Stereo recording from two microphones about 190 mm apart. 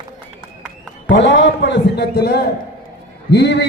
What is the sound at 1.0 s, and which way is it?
A man's voice, 70° left (ahead or behind).